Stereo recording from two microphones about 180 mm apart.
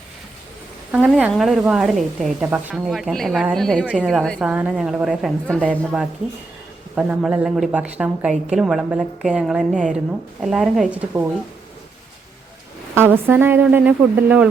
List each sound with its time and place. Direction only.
0.9 s a woman's voice: 5° right (ahead or behind)
12.9 s speech: 10° right (ahead or behind)